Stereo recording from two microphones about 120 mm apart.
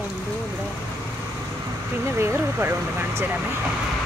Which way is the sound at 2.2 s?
20° right (ahead or behind).